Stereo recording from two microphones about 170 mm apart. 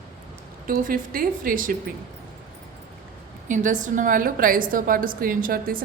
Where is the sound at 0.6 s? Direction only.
55° right (ahead or behind).